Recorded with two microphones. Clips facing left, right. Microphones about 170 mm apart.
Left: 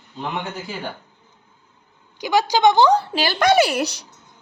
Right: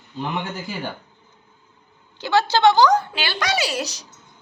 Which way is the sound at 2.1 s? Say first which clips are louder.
Even; 15° left (ahead or behind).